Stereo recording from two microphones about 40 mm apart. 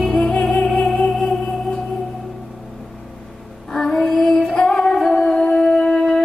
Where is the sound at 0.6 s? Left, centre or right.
Centre.